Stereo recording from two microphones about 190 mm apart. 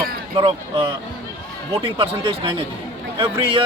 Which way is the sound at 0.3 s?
30° right (ahead or behind).